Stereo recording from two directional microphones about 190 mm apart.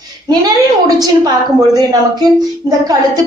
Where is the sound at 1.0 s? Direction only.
20° right (ahead or behind).